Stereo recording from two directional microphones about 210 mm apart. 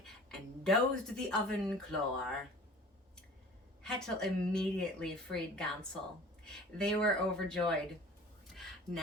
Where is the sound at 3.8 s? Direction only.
5° left (ahead or behind).